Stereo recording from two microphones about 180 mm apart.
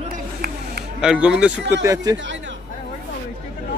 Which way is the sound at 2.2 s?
90° right.